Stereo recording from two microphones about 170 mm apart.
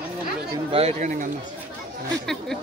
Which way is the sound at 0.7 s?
35° right (ahead or behind).